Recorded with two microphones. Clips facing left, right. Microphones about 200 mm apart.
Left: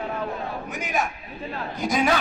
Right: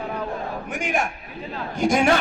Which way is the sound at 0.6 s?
50° right (ahead or behind).